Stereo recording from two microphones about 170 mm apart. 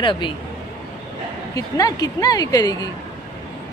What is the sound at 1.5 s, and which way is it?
Speech, 20° left (ahead or behind).